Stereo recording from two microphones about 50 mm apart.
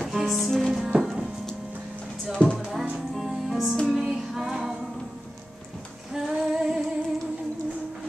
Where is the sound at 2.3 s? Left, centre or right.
Centre.